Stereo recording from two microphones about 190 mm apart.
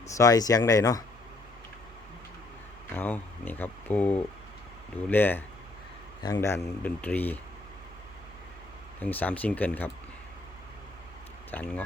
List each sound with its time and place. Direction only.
0.1 s speech: 20° left (ahead or behind)
2.9 s speech: 10° left (ahead or behind)
9.0 s speech: 10° left (ahead or behind)
11.5 s speech: 10° left (ahead or behind)